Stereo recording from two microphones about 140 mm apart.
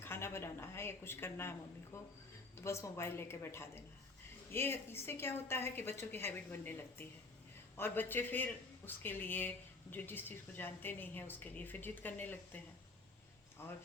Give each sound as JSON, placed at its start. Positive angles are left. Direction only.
{"t": 0.0, "sound": "a woman's voice", "side_deg": 15}
{"t": 13.6, "sound": "a woman's voice", "side_deg": 20}